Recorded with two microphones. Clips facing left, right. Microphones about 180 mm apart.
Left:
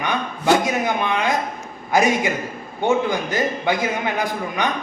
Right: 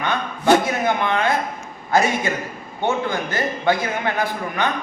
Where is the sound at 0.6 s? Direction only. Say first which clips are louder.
Even; 15° left (ahead or behind).